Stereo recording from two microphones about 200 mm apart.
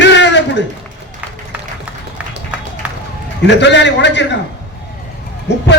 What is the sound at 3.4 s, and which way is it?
Speech, 60° left (ahead or behind).